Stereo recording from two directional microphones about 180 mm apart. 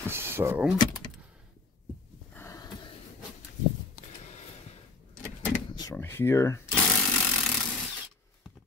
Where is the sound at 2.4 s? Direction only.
20° left (ahead or behind).